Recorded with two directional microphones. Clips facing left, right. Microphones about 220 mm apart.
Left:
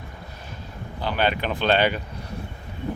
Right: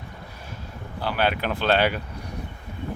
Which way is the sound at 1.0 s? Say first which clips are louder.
Even; 5° right (ahead or behind).